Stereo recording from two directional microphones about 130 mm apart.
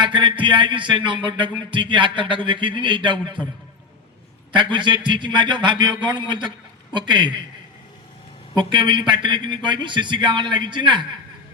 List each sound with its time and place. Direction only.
0.0 s music: 40° right (ahead or behind)
4.5 s music: 40° right (ahead or behind)
8.5 s music: 35° right (ahead or behind)